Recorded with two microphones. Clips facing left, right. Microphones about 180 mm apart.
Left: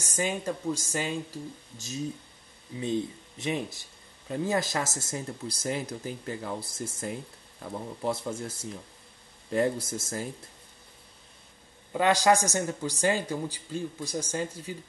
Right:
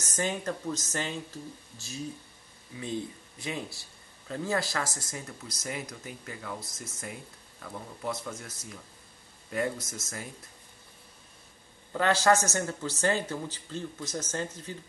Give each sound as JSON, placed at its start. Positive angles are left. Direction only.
{"t": 0.0, "sound": "speech", "side_deg": 10}
{"t": 11.9, "sound": "speech", "side_deg": 15}